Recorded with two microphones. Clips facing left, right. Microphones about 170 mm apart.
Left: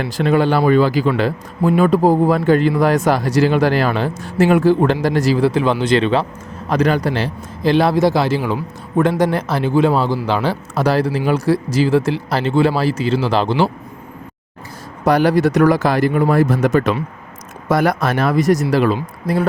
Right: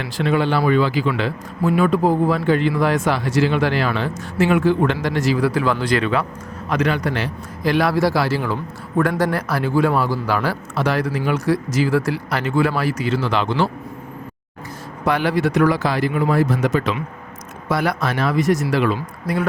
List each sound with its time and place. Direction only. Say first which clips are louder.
0.0 s speech: left 4 dB; 40° left (ahead or behind); by 6.2 s 25° left (ahead or behind)
6.7 s speech: left 4 dB; 35° left (ahead or behind)
10.8 s speech: left 4 dB; 35° left (ahead or behind)
15.0 s speech: left 5 dB; 40° left (ahead or behind)